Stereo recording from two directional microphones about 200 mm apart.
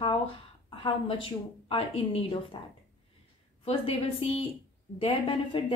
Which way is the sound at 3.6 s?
30° left (ahead or behind).